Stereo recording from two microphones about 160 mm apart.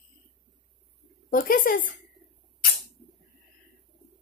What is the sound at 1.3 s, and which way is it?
Speech, 60° left (ahead or behind).